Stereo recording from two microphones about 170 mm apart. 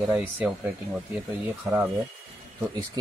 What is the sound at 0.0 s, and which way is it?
Speech, 10° right (ahead or behind).